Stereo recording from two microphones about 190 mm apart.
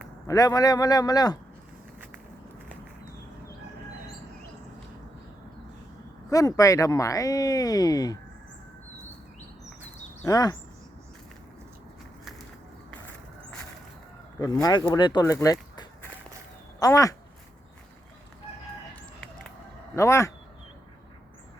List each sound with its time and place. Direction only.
0.3 s speech: 20° left (ahead or behind)
6.3 s speech: 20° left (ahead or behind)
10.2 s speech: 20° left (ahead or behind)
14.3 s speech: 20° left (ahead or behind)
16.8 s speech: 15° left (ahead or behind)
20.0 s speech: 15° left (ahead or behind)